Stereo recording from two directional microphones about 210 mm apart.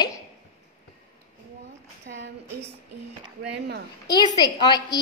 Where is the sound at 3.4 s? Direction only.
50° right (ahead or behind).